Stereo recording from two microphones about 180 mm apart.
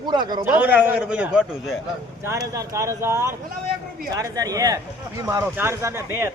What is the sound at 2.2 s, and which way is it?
Speech, 20° right (ahead or behind).